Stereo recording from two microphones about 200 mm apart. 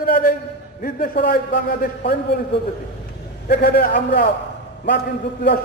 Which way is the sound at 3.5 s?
50° left (ahead or behind).